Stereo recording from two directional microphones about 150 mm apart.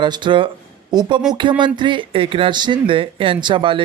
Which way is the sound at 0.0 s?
30° right (ahead or behind).